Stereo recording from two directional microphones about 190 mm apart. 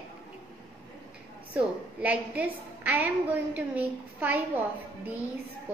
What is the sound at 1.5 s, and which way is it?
A woman's voice, 5° right (ahead or behind).